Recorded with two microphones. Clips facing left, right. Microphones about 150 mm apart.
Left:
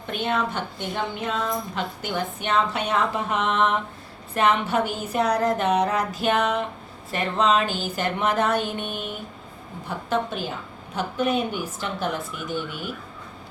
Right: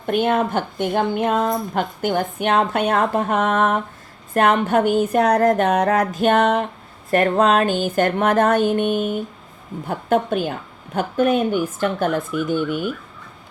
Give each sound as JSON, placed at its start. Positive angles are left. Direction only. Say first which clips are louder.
{"t": 0.0, "sound": "a woman's voice", "louder": "right 7 dB", "side_deg": -50}